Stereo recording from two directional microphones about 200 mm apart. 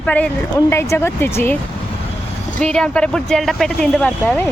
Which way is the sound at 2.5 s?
5° left (ahead or behind).